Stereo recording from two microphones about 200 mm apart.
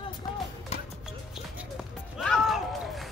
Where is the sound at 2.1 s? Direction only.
Centre (ahead or behind).